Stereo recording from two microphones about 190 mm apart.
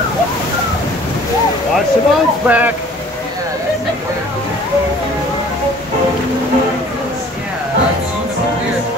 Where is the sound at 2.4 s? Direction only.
10° right (ahead or behind).